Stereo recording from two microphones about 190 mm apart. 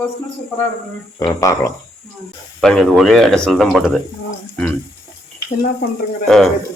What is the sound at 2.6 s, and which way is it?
Speech, 5° left (ahead or behind).